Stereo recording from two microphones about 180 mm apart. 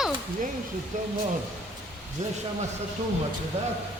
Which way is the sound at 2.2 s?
40° right (ahead or behind).